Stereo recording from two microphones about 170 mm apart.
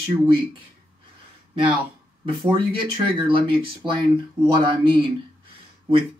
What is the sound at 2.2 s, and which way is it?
Speech, 30° right (ahead or behind).